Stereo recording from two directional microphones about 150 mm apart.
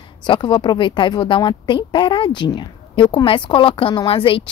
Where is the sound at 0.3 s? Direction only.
30° left (ahead or behind).